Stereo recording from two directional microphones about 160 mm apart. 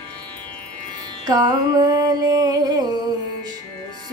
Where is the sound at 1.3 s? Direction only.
25° right (ahead or behind).